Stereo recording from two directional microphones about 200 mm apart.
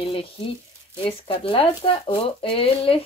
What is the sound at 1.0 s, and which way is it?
Speech, 25° left (ahead or behind).